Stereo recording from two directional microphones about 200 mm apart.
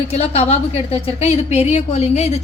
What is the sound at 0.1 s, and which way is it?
A woman's voice, 30° left (ahead or behind).